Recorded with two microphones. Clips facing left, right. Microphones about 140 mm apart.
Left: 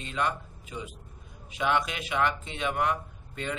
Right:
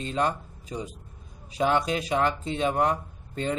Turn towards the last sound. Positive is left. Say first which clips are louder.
# right 5 dB
turn(degrees=-35)  # may be behind; listen again after turning